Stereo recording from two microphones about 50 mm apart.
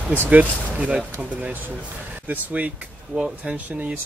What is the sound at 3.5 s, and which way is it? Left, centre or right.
Speech, right.